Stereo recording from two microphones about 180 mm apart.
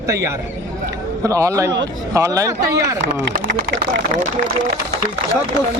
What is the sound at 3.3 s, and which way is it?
Speech, 55° right (ahead or behind).